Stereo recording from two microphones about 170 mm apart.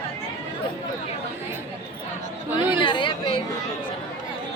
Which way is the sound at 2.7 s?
30° left (ahead or behind).